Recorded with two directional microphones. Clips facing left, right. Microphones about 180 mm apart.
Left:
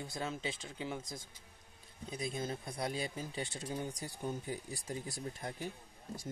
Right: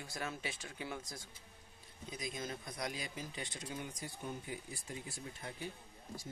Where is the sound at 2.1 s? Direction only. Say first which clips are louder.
Left 4 dB; 30° left (ahead or behind).